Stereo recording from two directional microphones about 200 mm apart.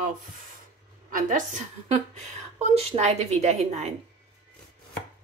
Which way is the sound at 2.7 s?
30° right (ahead or behind).